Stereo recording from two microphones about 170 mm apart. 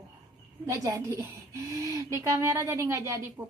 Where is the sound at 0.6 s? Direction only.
20° right (ahead or behind).